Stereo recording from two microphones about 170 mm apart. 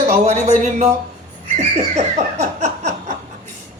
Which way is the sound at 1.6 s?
40° right (ahead or behind).